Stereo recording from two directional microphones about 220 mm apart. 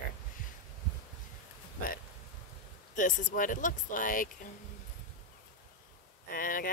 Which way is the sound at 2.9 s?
35° left (ahead or behind).